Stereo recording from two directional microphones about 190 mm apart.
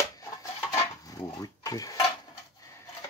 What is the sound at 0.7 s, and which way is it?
Dishes, 20° left (ahead or behind).